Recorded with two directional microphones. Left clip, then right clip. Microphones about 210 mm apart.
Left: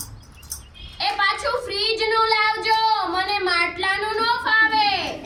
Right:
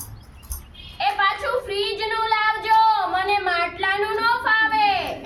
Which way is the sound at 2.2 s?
Centre (ahead or behind).